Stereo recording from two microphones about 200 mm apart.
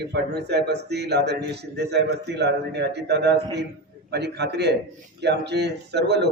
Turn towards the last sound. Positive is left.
turn(degrees=-55)  # may be behind; listen again after turning